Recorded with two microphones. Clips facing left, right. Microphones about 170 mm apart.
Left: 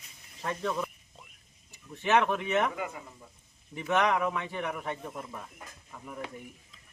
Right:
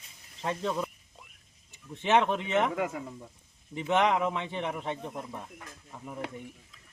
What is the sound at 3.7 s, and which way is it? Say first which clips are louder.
Speech: right 1 dB; 20° right (ahead or behind).